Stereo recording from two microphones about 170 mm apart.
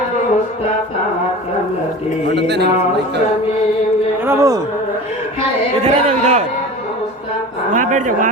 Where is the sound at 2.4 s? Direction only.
75° right (ahead or behind).